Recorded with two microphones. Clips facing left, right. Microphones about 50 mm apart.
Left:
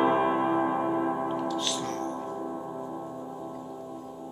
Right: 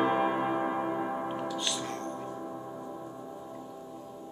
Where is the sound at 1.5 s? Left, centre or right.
Centre.